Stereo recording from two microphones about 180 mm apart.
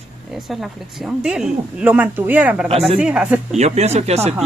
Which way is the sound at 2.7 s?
35° right (ahead or behind).